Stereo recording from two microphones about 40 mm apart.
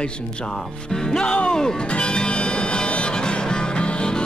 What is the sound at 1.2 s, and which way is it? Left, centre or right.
Music, left.